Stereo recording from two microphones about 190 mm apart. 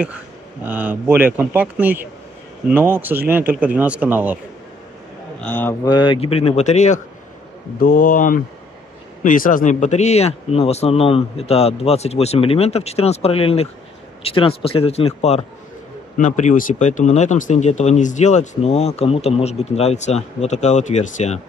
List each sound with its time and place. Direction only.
0.7 s speech: 10° right (ahead or behind)
5.4 s a man's voice: 10° left (ahead or behind)
5.9 s speech: 25° left (ahead or behind)
7.8 s speech: 50° left (ahead or behind)